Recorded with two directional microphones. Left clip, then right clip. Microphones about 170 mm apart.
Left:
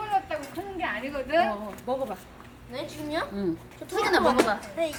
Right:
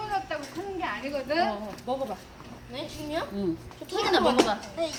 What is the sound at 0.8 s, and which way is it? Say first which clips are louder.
Speech: left 2 dB; 50° left (ahead or behind).